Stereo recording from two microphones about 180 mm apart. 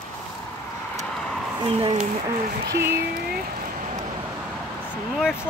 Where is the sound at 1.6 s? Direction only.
35° right (ahead or behind).